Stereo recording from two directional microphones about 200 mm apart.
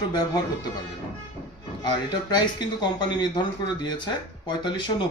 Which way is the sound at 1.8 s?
20° left (ahead or behind).